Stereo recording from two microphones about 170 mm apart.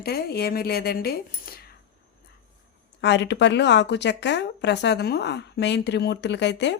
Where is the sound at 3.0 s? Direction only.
90° left.